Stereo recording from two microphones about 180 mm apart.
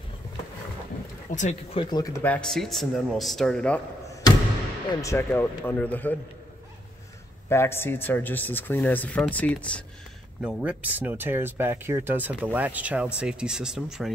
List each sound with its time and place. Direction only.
1.3 s speech: 40° left (ahead or behind); by 2.2 s 20° left (ahead or behind)
2.2 s speech: 5° left (ahead or behind)
5.0 s a man's voice: 15° left (ahead or behind)
7.4 s a man's voice: 15° left (ahead or behind)
10.4 s speech: 5° right (ahead or behind)